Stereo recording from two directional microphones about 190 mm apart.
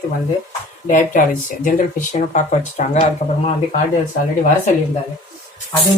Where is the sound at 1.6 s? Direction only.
40° left (ahead or behind).